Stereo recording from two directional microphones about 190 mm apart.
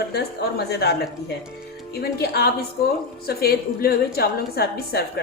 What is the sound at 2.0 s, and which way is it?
A woman's voice, 55° left (ahead or behind).